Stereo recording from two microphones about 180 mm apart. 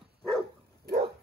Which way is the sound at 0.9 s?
60° right (ahead or behind).